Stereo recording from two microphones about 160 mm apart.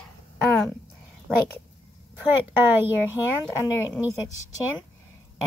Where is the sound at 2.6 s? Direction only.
15° right (ahead or behind).